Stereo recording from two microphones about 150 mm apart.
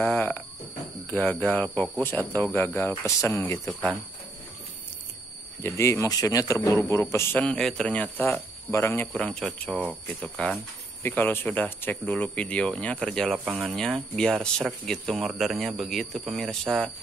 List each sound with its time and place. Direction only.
0.0 s speech: 15° left (ahead or behind)
1.4 s a man's voice: 10° left (ahead or behind)
5.6 s a man's voice: 20° left (ahead or behind); by 16.9 s centre (ahead or behind)